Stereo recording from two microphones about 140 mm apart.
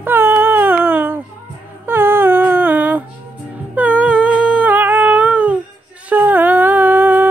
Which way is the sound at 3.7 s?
10° right (ahead or behind).